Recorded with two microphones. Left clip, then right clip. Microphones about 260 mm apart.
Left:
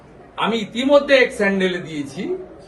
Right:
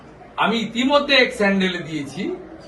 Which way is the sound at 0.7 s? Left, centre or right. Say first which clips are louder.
Left 5 dB; centre.